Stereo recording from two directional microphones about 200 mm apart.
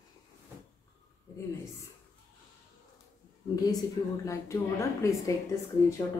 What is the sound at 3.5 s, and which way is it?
Speech, 20° left (ahead or behind).